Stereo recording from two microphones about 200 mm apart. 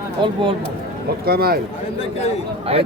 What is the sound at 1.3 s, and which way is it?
Speech, 50° right (ahead or behind).